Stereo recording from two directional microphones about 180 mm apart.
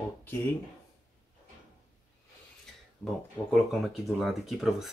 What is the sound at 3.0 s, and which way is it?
Speech, 5° left (ahead or behind).